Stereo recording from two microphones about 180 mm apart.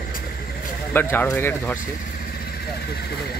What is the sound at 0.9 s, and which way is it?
Speech, 10° left (ahead or behind).